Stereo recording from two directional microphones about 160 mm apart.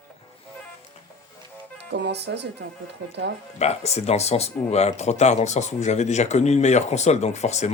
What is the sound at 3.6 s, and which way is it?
Speech, 45° left (ahead or behind).